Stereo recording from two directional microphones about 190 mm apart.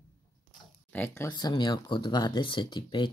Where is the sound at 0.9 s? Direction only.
10° left (ahead or behind).